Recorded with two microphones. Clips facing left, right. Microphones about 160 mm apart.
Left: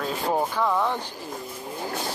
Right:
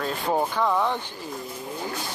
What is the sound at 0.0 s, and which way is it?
Speech, 5° left (ahead or behind).